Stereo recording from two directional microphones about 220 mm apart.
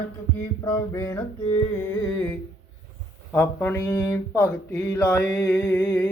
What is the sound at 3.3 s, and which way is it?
Speech, 10° left (ahead or behind).